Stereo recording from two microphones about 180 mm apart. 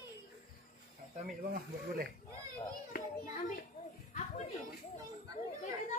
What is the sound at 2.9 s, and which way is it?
Children playing, 55° left (ahead or behind).